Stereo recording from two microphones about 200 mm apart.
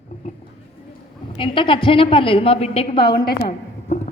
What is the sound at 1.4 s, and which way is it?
A man's voice, 25° left (ahead or behind).